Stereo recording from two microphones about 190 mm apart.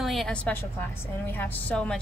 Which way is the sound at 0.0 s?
Centre (ahead or behind).